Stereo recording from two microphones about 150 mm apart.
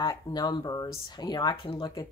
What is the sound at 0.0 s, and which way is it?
Speech, 30° left (ahead or behind).